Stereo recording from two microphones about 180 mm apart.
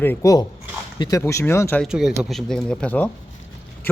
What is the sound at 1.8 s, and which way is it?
A man's voice, centre (ahead or behind).